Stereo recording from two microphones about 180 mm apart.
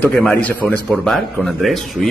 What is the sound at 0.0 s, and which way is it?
A man's voice, 5° left (ahead or behind).